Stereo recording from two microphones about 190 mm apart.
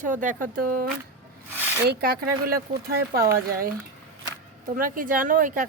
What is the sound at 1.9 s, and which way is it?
A woman's voice, 55° right (ahead or behind).